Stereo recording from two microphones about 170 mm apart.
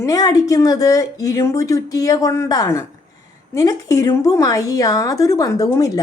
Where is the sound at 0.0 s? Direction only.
20° left (ahead or behind).